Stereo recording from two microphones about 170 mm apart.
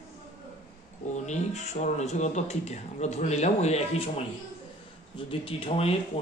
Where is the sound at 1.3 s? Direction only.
45° left (ahead or behind).